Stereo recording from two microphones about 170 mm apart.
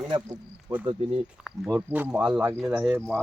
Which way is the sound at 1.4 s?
5° right (ahead or behind).